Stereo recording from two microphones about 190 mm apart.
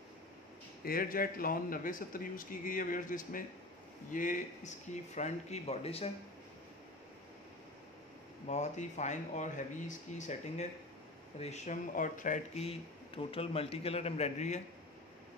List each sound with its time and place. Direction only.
0.8 s speech: 50° left (ahead or behind); by 6.0 s 30° left (ahead or behind)
8.5 s speech: 40° left (ahead or behind)